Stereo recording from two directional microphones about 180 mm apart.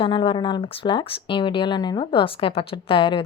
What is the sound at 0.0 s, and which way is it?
Speech, 30° left (ahead or behind).